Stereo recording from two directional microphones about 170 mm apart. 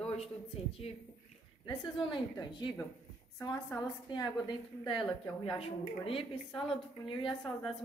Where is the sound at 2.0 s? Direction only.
25° left (ahead or behind).